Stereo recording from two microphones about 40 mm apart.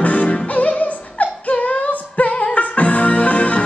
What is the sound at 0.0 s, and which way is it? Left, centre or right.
Music, left.